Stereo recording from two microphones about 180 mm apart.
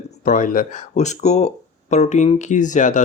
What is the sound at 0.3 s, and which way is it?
Speech, 45° left (ahead or behind).